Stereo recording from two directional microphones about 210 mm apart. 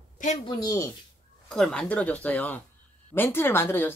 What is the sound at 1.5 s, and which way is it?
Speech, centre (ahead or behind).